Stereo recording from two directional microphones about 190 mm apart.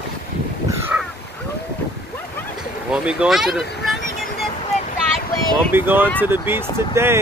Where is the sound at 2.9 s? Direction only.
5° right (ahead or behind).